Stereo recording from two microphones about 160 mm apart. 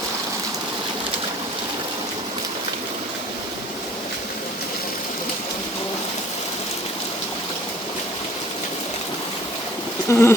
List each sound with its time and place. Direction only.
10.1 s speech: 15° left (ahead or behind)